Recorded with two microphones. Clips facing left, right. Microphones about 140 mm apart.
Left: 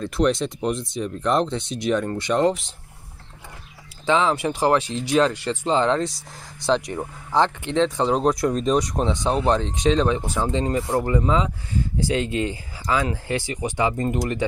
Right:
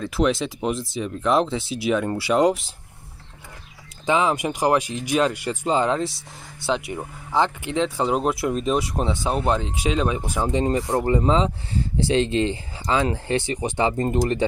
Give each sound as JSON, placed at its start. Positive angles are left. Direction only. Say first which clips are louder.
{"t": 0.0, "sound": "speech", "louder": "left 1 dB", "side_deg": 0}
{"t": 4.0, "sound": "speech", "louder": "left 1 dB", "side_deg": -15}